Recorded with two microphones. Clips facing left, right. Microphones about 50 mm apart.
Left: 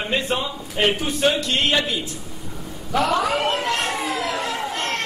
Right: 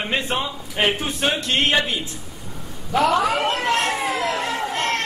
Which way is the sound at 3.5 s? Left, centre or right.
Right.